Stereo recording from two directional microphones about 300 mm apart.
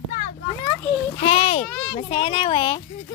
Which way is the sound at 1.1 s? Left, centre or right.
Centre.